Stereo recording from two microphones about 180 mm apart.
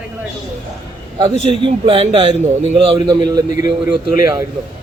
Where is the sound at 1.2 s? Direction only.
35° right (ahead or behind).